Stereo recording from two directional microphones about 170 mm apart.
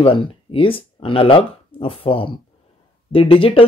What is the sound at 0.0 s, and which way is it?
Speech, 35° left (ahead or behind).